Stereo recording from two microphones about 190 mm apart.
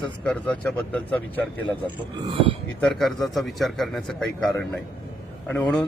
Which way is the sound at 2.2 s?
30° right (ahead or behind).